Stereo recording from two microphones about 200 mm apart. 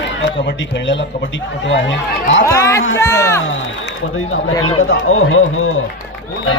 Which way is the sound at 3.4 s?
70° left (ahead or behind).